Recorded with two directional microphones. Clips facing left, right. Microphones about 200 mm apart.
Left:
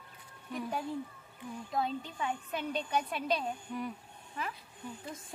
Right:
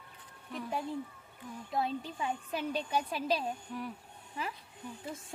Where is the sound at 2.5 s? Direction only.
5° right (ahead or behind).